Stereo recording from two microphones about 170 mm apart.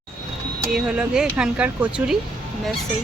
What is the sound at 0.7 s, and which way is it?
Speech, 5° right (ahead or behind).